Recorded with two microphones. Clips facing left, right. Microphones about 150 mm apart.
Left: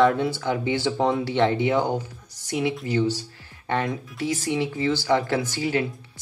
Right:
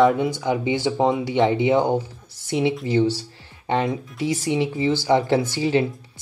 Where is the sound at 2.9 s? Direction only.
30° right (ahead or behind).